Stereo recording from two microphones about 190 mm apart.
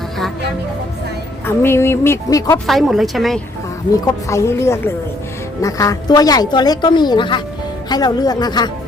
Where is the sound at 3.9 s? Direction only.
15° left (ahead or behind).